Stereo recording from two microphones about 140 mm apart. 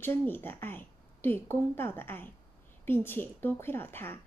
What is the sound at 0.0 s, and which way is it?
A woman's voice, 15° left (ahead or behind).